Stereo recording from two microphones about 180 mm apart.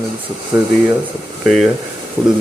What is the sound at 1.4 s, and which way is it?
Speech, centre (ahead or behind).